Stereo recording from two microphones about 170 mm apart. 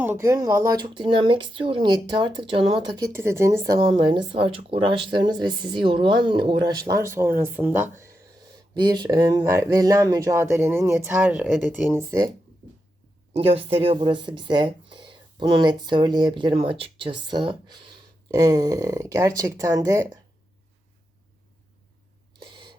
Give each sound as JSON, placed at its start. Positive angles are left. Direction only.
{"t": 0.0, "sound": "speech", "side_deg": -15}
{"t": 3.8, "sound": "speech", "side_deg": -25}
{"t": 8.7, "sound": "speech", "side_deg": -25}
{"t": 13.3, "sound": "speech", "side_deg": -35}
{"t": 22.4, "sound": "owl", "side_deg": -30}